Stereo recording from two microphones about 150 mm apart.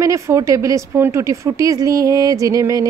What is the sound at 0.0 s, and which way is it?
Speech, 20° right (ahead or behind).